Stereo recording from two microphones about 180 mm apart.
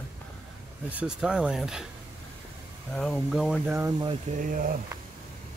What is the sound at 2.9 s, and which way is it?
Speech, 5° left (ahead or behind).